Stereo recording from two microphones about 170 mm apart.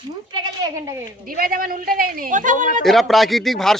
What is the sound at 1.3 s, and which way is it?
A woman's voice, 60° right (ahead or behind).